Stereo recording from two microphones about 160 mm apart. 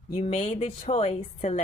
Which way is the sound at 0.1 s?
45° left (ahead or behind).